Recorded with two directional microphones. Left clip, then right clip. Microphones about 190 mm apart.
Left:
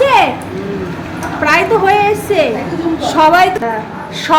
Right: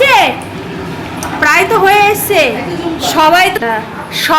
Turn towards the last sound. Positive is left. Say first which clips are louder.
# even
turn(degrees=5)  # may be behind; listen again after turning